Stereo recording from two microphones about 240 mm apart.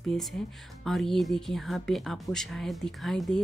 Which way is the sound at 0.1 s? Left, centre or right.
Centre.